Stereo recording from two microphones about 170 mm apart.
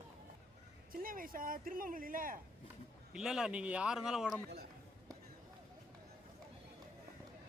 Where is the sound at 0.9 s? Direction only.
55° right (ahead or behind).